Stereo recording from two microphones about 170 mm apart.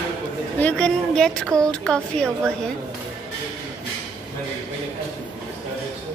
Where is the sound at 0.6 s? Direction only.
5° left (ahead or behind).